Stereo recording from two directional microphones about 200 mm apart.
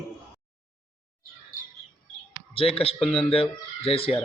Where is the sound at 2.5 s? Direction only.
30° left (ahead or behind).